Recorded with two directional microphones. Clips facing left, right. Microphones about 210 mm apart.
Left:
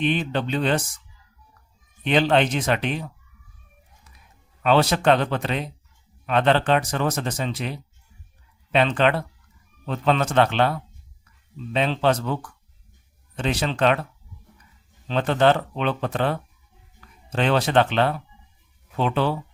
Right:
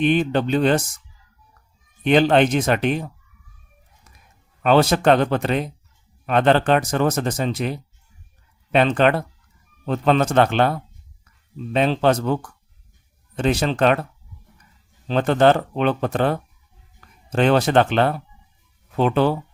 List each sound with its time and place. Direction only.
0.0 s speech: 45° right (ahead or behind)
2.0 s speech: 45° right (ahead or behind)
4.6 s speech: 45° right (ahead or behind)
15.0 s speech: 45° right (ahead or behind)